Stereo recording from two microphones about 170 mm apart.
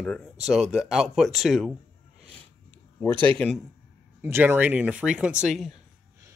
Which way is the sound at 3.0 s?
10° left (ahead or behind).